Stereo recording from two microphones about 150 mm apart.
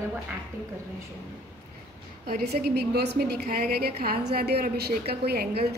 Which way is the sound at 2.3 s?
90° right.